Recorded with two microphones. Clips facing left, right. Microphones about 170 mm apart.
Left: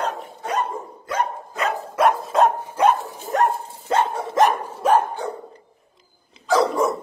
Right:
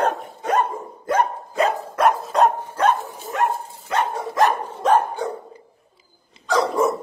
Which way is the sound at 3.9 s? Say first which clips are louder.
Left 2 dB; 25° left (ahead or behind).